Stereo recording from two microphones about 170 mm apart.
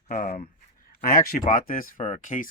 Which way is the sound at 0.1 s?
55° left (ahead or behind).